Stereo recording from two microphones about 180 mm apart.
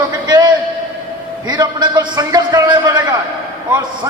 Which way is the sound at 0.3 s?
25° right (ahead or behind).